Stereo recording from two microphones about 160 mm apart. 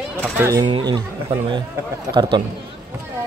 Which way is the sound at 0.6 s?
30° right (ahead or behind).